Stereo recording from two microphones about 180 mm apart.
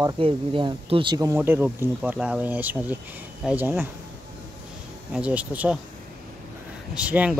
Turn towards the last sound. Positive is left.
turn(degrees=-5)  # may be behind; listen again after turning